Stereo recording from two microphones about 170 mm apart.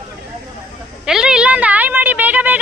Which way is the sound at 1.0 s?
5° right (ahead or behind).